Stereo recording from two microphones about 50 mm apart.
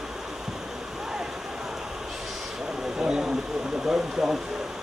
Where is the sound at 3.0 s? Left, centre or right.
Centre.